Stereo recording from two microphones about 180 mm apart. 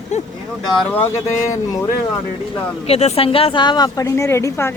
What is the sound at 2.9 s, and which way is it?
A woman's voice, 35° left (ahead or behind).